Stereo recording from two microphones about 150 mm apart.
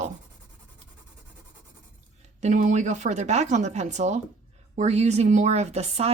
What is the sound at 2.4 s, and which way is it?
A woman's voice, 55° right (ahead or behind).